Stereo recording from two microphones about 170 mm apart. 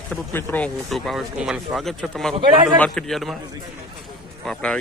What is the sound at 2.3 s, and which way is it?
Speech, 30° right (ahead or behind).